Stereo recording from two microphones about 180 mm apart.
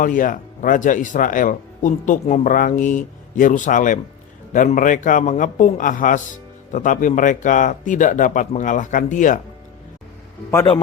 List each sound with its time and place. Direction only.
0.0 s speech: 45° left (ahead or behind)
10.5 s speech: 15° left (ahead or behind)